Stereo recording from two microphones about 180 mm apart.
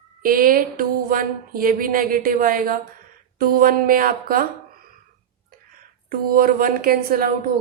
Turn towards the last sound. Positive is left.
turn(degrees=-55)  # may be behind; listen again after turning